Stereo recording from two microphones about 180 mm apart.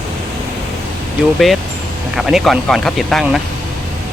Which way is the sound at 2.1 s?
Centre (ahead or behind).